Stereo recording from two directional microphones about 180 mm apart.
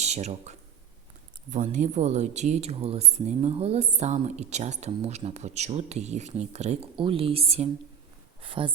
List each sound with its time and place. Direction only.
0.0 s speech: 40° right (ahead or behind)